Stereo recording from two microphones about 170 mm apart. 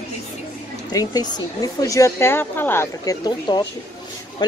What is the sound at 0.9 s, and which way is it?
Speech, 20° left (ahead or behind).